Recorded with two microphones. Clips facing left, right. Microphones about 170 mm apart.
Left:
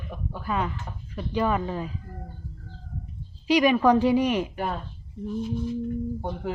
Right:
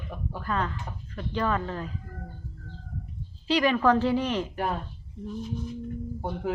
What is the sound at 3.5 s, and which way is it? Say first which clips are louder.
Speech: left 3 dB; 15° left (ahead or behind).